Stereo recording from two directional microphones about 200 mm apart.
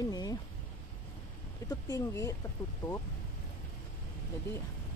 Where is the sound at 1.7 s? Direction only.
15° left (ahead or behind).